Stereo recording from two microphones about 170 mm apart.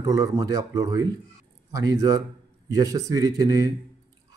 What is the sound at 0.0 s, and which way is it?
A man's voice, 20° right (ahead or behind).